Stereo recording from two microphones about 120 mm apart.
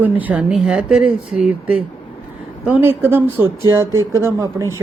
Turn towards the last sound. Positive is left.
turn(degrees=-25)  # may be behind; listen again after turning